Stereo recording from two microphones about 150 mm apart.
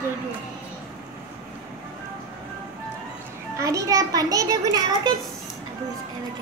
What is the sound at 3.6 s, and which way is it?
A child's voice, 20° right (ahead or behind).